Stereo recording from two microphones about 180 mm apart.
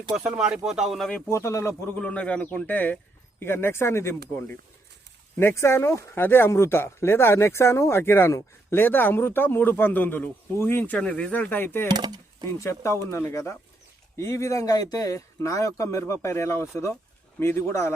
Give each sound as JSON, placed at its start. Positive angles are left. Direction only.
{"t": 0.1, "sound": "speech", "side_deg": -5}
{"t": 1.3, "sound": "speech", "side_deg": 15}
{"t": 5.4, "sound": "speech", "side_deg": 15}
{"t": 11.9, "sound": "speech", "side_deg": -25}
{"t": 12.5, "sound": "speech", "side_deg": 15}